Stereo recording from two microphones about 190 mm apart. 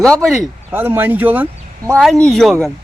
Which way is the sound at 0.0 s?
Centre (ahead or behind).